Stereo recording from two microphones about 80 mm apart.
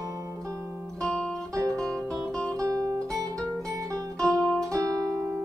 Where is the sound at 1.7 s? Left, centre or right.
Centre.